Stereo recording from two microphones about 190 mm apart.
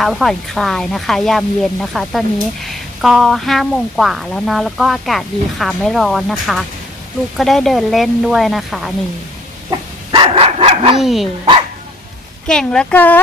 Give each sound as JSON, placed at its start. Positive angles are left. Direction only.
{"t": 0.0, "sound": "speech", "side_deg": 0}
{"t": 10.1, "sound": "dog", "side_deg": -30}
{"t": 11.0, "sound": "speech", "side_deg": 0}
{"t": 12.4, "sound": "a woman's voice", "side_deg": 5}